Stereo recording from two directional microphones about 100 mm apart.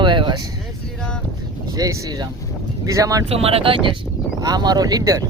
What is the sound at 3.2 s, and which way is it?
Speech, 80° right.